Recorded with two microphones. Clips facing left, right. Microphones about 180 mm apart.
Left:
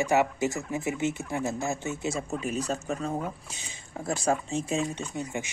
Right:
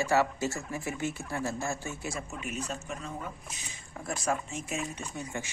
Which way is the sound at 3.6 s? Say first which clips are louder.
Left 9 dB; 30° left (ahead or behind).